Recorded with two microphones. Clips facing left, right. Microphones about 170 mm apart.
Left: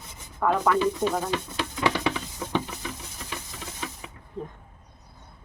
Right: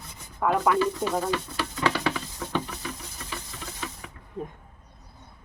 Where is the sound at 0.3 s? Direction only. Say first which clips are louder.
Even; 15° right (ahead or behind).